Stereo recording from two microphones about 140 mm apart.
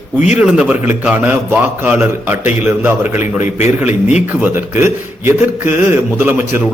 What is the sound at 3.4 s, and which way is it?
Speech, 55° left (ahead or behind).